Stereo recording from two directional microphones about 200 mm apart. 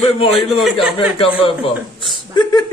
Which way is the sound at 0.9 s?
25° left (ahead or behind).